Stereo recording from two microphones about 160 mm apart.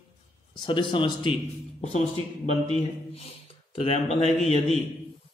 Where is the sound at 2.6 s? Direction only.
40° left (ahead or behind).